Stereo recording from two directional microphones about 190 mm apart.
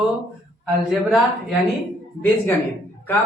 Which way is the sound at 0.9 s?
Centre (ahead or behind).